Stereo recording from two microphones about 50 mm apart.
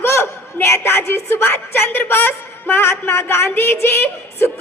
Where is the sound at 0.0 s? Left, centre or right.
Left.